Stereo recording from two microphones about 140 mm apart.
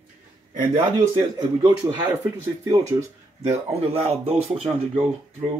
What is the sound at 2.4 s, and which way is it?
Speech, 20° right (ahead or behind).